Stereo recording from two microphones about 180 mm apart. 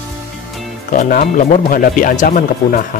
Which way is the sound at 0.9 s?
50° left (ahead or behind).